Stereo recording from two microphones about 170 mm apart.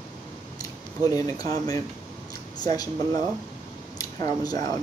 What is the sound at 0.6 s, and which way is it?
Speech, 20° left (ahead or behind).